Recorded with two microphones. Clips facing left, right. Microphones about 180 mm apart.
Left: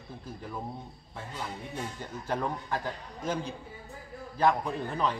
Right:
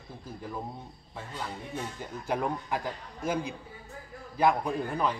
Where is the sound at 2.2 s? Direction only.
10° right (ahead or behind).